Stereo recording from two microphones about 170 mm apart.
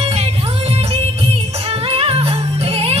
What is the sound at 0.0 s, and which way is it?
Music, 35° right (ahead or behind).